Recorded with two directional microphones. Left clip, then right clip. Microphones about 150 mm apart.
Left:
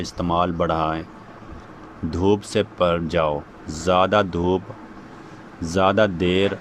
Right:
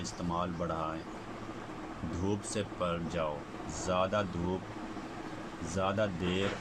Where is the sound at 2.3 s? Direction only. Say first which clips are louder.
Left 17 dB; 75° left (ahead or behind).